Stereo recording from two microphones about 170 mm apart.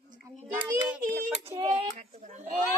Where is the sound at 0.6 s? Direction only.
15° right (ahead or behind).